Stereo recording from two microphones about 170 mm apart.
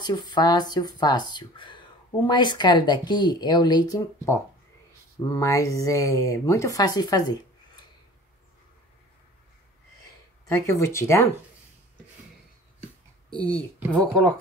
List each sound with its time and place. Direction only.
0.0 s speech: 25° left (ahead or behind)
10.5 s speech: 15° left (ahead or behind)
13.8 s speech: 5° left (ahead or behind)